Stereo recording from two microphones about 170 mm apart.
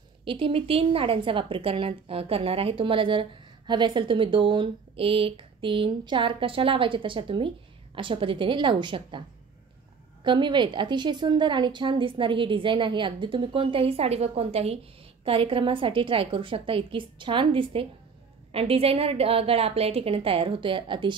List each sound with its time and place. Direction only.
0.2 s a woman's voice: 30° right (ahead or behind)
10.2 s a woman's voice: 25° right (ahead or behind)